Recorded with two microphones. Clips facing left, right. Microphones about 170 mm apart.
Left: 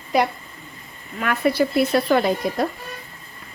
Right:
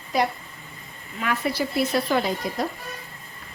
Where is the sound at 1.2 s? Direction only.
55° left (ahead or behind).